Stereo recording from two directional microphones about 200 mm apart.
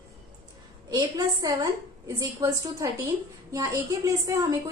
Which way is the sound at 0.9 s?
15° right (ahead or behind).